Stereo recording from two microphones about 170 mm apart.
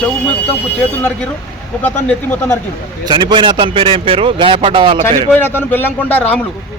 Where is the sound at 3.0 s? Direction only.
25° right (ahead or behind).